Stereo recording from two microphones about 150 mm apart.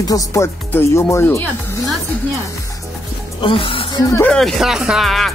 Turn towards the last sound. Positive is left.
turn(degrees=0)  # may be behind; listen again after turning